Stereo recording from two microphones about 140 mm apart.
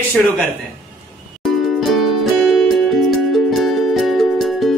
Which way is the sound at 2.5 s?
Centre (ahead or behind).